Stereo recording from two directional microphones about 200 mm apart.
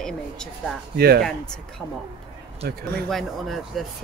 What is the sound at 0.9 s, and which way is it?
Speech, 50° right (ahead or behind).